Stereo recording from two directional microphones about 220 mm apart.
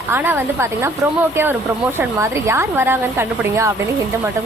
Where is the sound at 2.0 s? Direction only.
10° right (ahead or behind).